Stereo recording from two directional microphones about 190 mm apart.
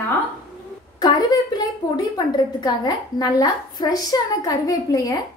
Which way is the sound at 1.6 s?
20° left (ahead or behind).